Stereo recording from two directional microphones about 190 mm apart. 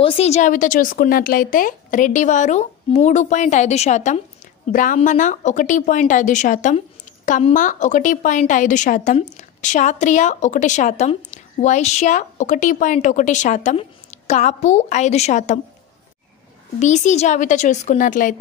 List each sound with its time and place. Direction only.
0.0 s a woman's voice: 30° left (ahead or behind)
16.8 s a woman's voice: 40° left (ahead or behind)